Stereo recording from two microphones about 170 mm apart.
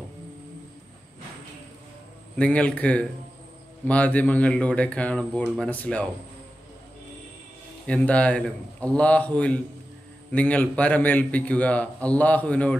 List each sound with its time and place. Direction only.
2.3 s a man's voice: 5° left (ahead or behind)
7.8 s a man's voice: 5° left (ahead or behind)